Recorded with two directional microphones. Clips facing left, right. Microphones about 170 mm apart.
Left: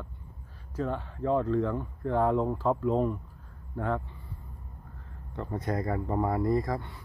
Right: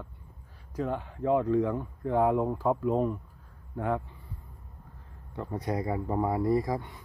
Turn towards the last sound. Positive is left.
turn(degrees=-15)  # may be behind; listen again after turning